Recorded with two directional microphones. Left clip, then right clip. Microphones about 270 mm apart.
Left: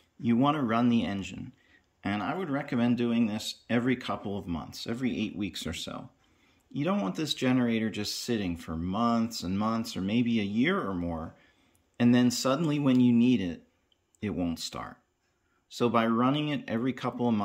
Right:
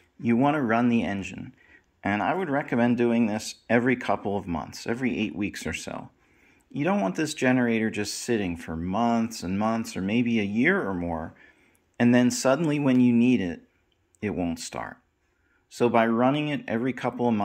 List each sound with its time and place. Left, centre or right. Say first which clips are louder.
0.2 s speech: right 3 dB; centre